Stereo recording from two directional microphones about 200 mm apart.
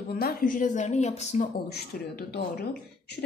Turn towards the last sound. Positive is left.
turn(degrees=50)  # may be behind; listen again after turning